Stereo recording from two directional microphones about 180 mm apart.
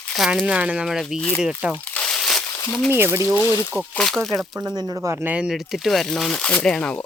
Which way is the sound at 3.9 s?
5° left (ahead or behind).